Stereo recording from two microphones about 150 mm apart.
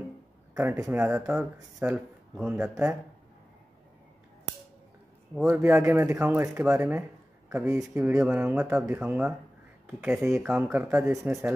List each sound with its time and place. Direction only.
0.6 s speech: 15° right (ahead or behind)
2.3 s speech: 5° right (ahead or behind)
2.7 s speech: 20° right (ahead or behind)
5.4 s speech: 20° right (ahead or behind)